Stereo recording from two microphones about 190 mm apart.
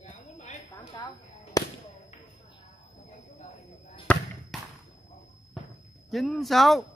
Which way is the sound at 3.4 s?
35° left (ahead or behind).